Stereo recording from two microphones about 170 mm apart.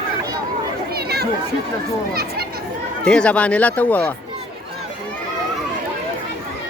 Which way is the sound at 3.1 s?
5° left (ahead or behind).